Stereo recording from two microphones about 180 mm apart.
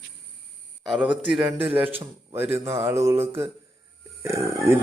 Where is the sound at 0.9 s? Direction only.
5° right (ahead or behind).